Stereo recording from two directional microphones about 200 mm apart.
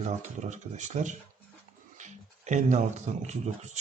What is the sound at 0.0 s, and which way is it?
Speech, 35° right (ahead or behind).